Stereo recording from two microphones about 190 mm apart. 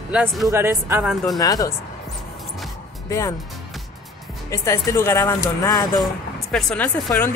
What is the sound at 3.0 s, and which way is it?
Speech, 15° left (ahead or behind).